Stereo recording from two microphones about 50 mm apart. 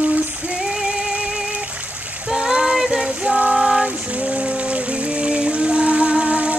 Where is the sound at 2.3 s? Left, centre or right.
Centre.